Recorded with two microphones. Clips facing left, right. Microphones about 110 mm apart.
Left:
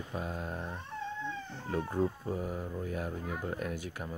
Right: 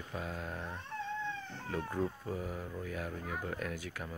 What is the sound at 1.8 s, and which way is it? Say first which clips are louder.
Speech: left 4 dB; 15° left (ahead or behind).